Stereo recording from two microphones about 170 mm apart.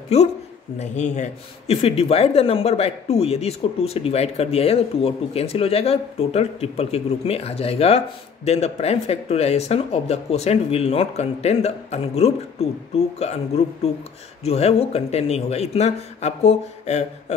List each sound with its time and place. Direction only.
0.1 s speech: 40° left (ahead or behind)
14.4 s speech: 40° left (ahead or behind)